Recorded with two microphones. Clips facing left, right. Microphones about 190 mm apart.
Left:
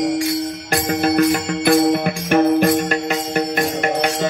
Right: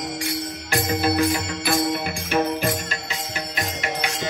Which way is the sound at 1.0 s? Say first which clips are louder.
Left 6 dB; 60° left (ahead or behind).